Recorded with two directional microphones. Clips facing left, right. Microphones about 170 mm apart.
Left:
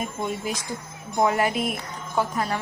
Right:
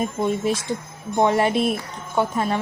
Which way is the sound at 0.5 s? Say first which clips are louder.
Right 7 dB; 30° right (ahead or behind).